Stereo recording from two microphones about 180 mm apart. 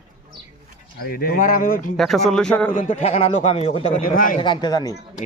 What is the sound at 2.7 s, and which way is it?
Speech, 35° left (ahead or behind).